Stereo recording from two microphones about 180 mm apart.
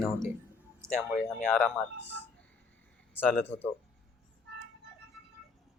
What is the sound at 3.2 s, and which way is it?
Speech, 10° left (ahead or behind).